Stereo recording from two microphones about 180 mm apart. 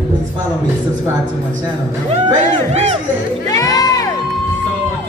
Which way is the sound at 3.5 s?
20° left (ahead or behind).